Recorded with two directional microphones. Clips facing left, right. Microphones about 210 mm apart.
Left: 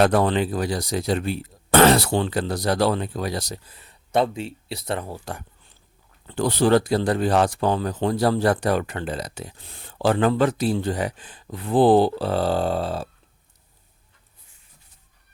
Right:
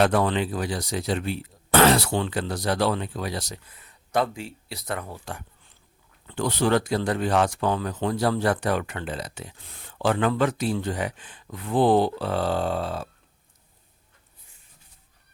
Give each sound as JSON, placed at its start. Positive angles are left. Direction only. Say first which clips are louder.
{"t": 0.0, "sound": "speech", "louder": "left 3 dB", "side_deg": 40}